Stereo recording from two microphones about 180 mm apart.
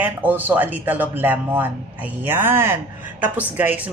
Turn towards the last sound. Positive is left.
turn(degrees=-10)  # may be behind; listen again after turning